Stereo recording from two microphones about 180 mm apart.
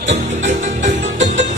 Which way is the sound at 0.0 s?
40° right (ahead or behind).